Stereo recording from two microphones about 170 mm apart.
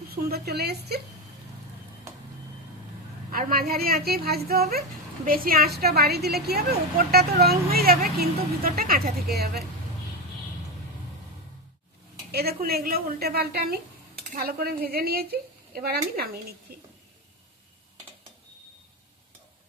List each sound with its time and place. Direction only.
0.1 s a woman's voice: 65° right (ahead or behind)
3.3 s a woman's voice: 60° right (ahead or behind)
12.3 s a woman's voice: 70° right (ahead or behind)